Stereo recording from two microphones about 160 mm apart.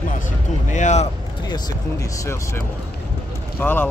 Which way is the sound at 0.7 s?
45° left (ahead or behind).